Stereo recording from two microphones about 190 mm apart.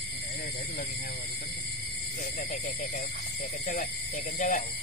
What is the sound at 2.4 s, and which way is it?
Speech, 45° left (ahead or behind).